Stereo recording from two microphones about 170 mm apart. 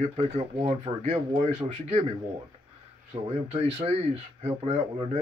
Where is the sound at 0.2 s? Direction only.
40° right (ahead or behind).